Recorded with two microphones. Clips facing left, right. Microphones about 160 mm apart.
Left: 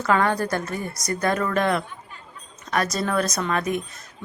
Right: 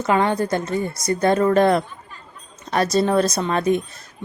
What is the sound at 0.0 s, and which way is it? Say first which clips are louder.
A woman's voice: right 2 dB; 20° right (ahead or behind).